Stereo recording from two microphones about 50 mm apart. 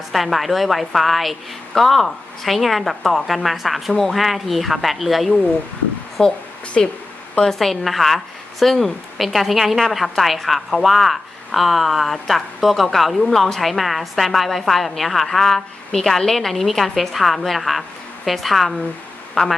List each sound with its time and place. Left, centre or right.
0.1 s speech: centre
6.2 s speech: centre
7.6 s speech: centre